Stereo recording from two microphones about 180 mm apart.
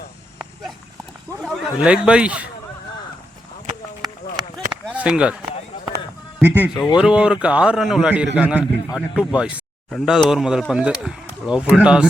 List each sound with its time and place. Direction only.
1.4 s speech: 5° right (ahead or behind)
4.9 s speech: 5° right (ahead or behind)
6.7 s speech: 20° left (ahead or behind)
7.0 s speech: 5° right (ahead or behind)